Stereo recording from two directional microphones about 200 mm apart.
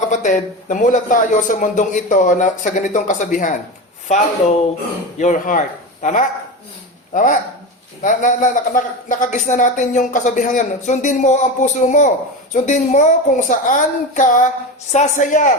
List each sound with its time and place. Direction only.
0.1 s a woman's voice: 35° left (ahead or behind)
5.1 s a woman's voice: 40° left (ahead or behind)